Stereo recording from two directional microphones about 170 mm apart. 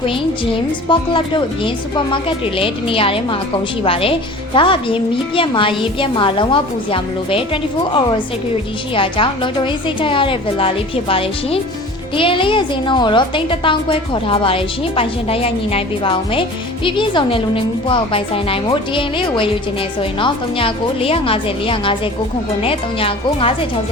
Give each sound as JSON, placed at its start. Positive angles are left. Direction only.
{"t": 0.0, "sound": "a woman's voice", "side_deg": 30}